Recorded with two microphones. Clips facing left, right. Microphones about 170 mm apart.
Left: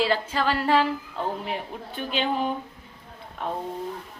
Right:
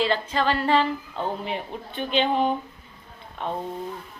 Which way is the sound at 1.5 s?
5° left (ahead or behind).